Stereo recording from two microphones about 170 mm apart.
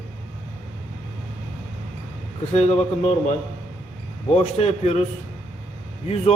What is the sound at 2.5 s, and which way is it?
Speech, 40° left (ahead or behind).